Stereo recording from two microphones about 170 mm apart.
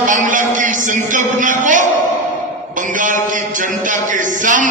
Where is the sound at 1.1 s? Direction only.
50° right (ahead or behind).